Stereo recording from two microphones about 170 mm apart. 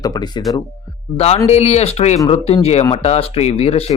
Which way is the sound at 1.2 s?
40° left (ahead or behind).